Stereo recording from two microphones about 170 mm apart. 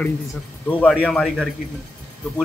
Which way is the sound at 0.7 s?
10° left (ahead or behind).